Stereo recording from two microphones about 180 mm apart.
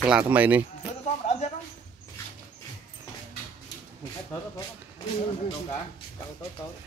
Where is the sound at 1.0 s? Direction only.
40° left (ahead or behind).